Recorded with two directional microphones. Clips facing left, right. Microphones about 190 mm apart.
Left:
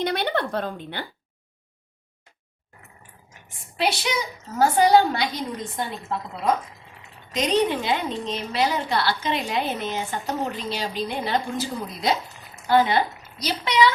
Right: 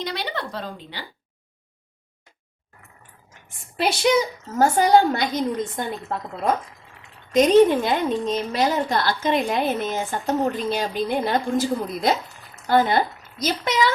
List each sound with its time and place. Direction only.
0.0 s speech: 55° left (ahead or behind)
3.8 s a woman's voice: 45° right (ahead or behind)
7.3 s a woman's voice: 50° right (ahead or behind)